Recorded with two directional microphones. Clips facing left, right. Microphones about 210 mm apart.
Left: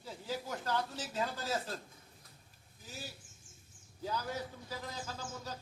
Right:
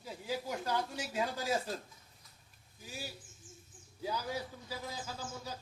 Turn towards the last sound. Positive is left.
turn(degrees=-10)  # may be behind; listen again after turning